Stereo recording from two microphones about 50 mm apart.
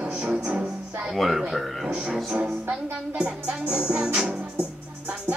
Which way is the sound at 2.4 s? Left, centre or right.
Centre.